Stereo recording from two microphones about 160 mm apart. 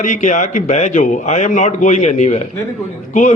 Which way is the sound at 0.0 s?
50° left (ahead or behind).